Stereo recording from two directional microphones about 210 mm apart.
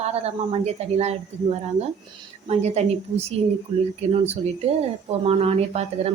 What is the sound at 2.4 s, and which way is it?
Speech, 30° right (ahead or behind).